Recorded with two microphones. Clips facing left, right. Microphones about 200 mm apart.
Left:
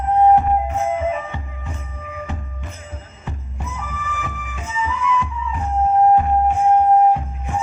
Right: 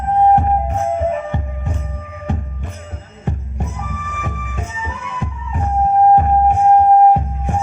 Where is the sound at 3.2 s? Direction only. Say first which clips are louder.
Right 8 dB; 55° right (ahead or behind).